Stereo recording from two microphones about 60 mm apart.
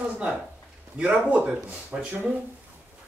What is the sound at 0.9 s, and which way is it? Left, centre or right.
A man's voice, centre.